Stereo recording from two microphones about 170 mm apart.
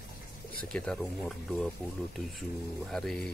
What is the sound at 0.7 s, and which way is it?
Speech, 5° left (ahead or behind).